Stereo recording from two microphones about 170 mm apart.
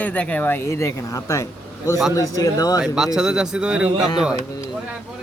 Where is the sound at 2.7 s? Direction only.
5° right (ahead or behind).